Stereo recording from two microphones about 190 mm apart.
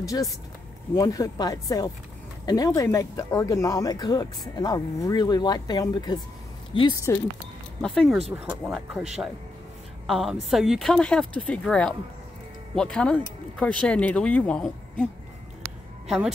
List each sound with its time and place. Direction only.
0.0 s speech: 20° left (ahead or behind)
7.8 s a woman's voice: 5° left (ahead or behind)
10.0 s a woman's voice: centre (ahead or behind)